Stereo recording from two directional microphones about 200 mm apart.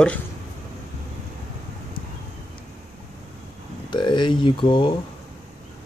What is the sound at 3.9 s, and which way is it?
Speech, 25° left (ahead or behind).